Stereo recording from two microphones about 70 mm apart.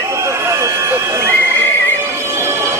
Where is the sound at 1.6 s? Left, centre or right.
Left.